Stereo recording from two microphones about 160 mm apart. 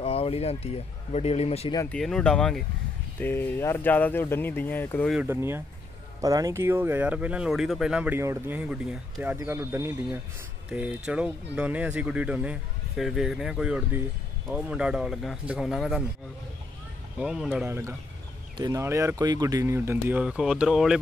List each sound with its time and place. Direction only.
0.0 s speech: 35° left (ahead or behind)
1.9 s speech: 5° left (ahead or behind)
5.1 s speech: 10° right (ahead or behind)
10.7 s speech: 5° right (ahead or behind)
17.2 s speech: 5° right (ahead or behind)
17.6 s speech: 15° right (ahead or behind)